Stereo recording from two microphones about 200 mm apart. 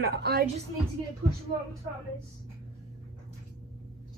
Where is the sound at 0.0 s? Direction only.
50° right (ahead or behind).